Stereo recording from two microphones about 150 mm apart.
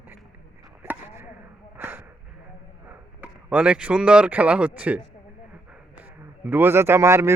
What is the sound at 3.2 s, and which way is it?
Speech, 10° right (ahead or behind).